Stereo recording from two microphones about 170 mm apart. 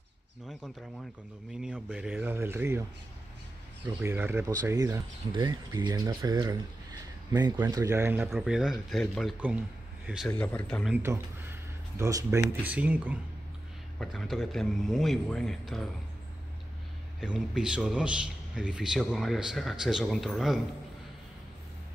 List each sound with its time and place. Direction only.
0.5 s a man's voice: centre (ahead or behind)
4.0 s speech: 10° right (ahead or behind)
8.2 s a man's voice: 5° right (ahead or behind)
10.9 s speech: 15° right (ahead or behind)
12.6 s a man's voice: 10° right (ahead or behind)
17.2 s a man's voice: 5° right (ahead or behind)